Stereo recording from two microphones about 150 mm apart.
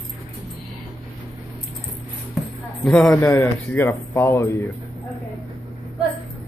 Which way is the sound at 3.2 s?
15° left (ahead or behind).